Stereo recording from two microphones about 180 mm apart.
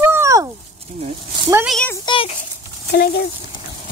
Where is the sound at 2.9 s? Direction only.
60° left (ahead or behind).